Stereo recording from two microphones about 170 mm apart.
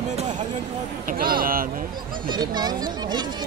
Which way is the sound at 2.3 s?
25° right (ahead or behind).